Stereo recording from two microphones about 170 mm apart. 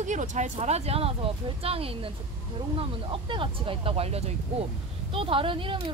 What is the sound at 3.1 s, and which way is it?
Speech, 30° right (ahead or behind).